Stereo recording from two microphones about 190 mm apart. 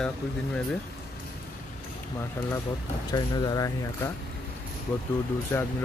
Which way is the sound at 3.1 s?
20° left (ahead or behind).